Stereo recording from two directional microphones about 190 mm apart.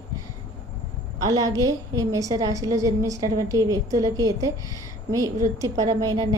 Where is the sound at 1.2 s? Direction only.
20° right (ahead or behind).